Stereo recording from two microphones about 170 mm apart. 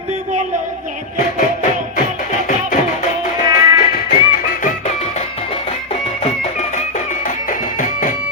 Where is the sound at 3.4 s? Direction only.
20° right (ahead or behind).